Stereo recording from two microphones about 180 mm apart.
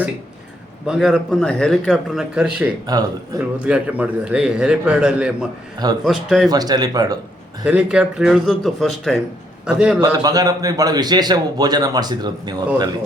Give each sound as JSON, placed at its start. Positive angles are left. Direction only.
{"t": 0.9, "sound": "a man's voice", "side_deg": -5}
{"t": 2.8, "sound": "a man's voice", "side_deg": -20}
{"t": 3.6, "sound": "a man's voice", "side_deg": -5}
{"t": 6.5, "sound": "a man's voice", "side_deg": -20}
{"t": 7.6, "sound": "a man's voice", "side_deg": -5}
{"t": 10.0, "sound": "a man's voice", "side_deg": -20}